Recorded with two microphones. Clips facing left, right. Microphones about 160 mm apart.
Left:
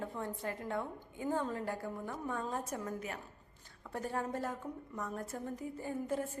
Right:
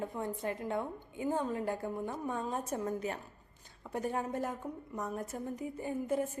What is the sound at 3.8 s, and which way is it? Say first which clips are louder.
A woman's voice: right 3 dB; 15° right (ahead or behind).